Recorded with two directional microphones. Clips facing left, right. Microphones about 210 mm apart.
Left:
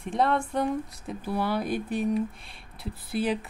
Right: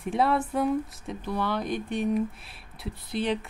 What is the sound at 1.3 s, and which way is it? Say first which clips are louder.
Speech: left 1 dB; 10° left (ahead or behind).